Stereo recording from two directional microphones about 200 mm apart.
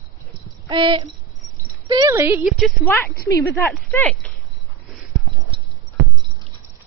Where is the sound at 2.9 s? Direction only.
10° left (ahead or behind).